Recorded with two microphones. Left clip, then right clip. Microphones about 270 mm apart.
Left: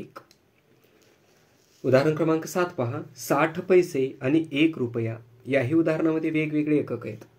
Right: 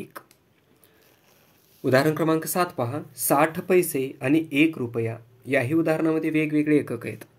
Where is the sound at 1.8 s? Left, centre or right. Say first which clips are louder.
Even; right.